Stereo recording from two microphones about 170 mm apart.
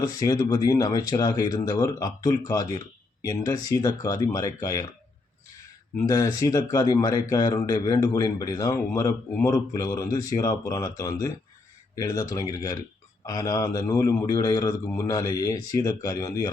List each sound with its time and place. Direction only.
0.0 s speech: 20° left (ahead or behind)
6.0 s speech: 20° left (ahead or behind)